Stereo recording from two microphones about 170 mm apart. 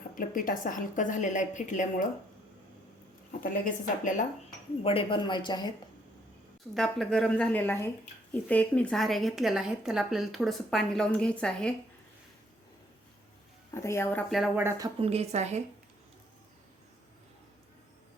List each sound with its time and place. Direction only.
0.2 s a woman's voice: 55° left (ahead or behind)
3.4 s a woman's voice: 50° left (ahead or behind)
4.8 s speech: 35° left (ahead or behind)
6.7 s speech: centre (ahead or behind)
13.7 s speech: 15° left (ahead or behind); by 14.6 s centre (ahead or behind)
14.9 s a woman's voice: 35° right (ahead or behind)